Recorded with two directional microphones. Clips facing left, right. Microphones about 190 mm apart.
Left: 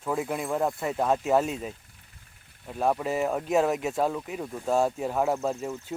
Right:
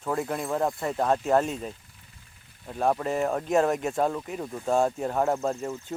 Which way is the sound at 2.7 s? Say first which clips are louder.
Right 1 dB; 5° left (ahead or behind).